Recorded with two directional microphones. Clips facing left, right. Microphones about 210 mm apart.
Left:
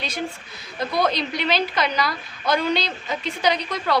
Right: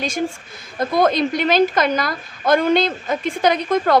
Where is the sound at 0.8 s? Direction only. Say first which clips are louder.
Right 6 dB; 50° right (ahead or behind).